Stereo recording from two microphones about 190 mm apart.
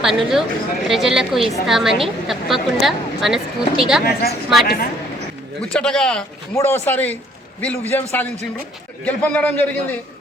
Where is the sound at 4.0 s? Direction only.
55° left (ahead or behind).